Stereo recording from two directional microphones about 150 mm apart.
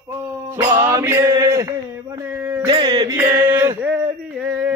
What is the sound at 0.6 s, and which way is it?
Music, 20° right (ahead or behind).